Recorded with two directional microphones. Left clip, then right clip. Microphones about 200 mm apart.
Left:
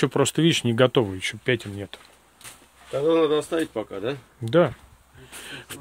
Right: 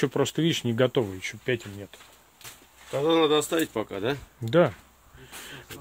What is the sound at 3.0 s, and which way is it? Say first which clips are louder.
Speech: left 1 dB; 45° right (ahead or behind).